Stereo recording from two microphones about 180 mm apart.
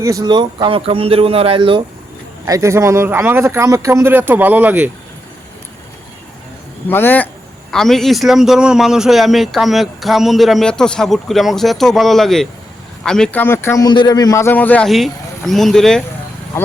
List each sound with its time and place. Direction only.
0.0 s speech: 20° right (ahead or behind)
2.5 s speech: 15° right (ahead or behind)
6.8 s a man's voice: 10° left (ahead or behind)